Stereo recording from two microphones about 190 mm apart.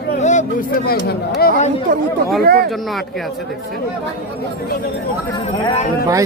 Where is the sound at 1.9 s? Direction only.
45° right (ahead or behind).